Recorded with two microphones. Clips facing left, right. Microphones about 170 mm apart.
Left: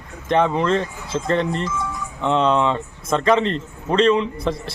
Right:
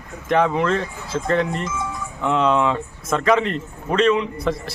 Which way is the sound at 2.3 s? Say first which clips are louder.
Left 1 dB; 30° left (ahead or behind).